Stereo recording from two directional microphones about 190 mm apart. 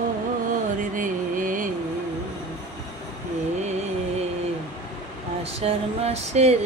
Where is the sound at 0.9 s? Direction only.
45° right (ahead or behind).